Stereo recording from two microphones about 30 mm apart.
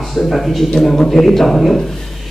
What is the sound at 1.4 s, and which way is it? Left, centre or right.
Speech, centre.